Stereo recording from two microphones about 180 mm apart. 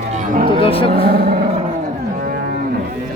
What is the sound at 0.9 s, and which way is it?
Speech, 60° right (ahead or behind).